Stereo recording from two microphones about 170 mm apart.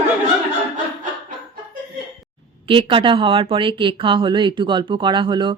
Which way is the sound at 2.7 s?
30° right (ahead or behind).